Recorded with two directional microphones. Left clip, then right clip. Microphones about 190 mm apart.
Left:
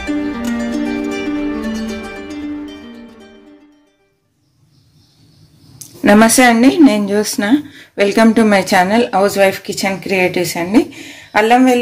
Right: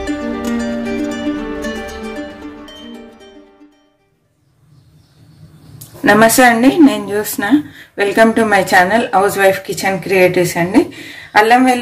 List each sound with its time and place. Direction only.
0.0 s music: centre (ahead or behind)
6.0 s a woman's voice: 40° left (ahead or behind)